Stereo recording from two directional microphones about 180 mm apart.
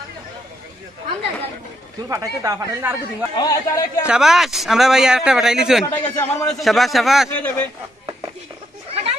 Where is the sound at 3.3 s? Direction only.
20° left (ahead or behind).